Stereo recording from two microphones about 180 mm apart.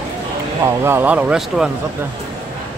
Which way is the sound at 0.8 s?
10° right (ahead or behind).